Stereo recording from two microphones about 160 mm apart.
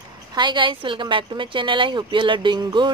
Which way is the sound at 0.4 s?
30° right (ahead or behind).